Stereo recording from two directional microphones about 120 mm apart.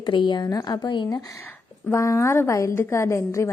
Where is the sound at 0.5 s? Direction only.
30° left (ahead or behind).